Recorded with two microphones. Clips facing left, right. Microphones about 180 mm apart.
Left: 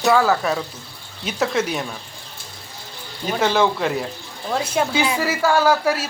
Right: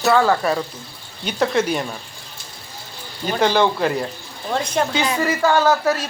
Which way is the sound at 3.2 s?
Centre (ahead or behind).